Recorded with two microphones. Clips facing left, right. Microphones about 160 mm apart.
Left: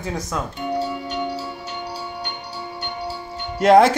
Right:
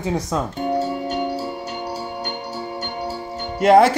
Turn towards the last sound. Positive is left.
turn(degrees=-5)  # may be behind; listen again after turning